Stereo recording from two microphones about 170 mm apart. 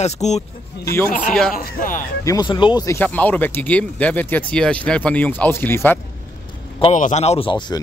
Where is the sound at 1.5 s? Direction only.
55° left (ahead or behind).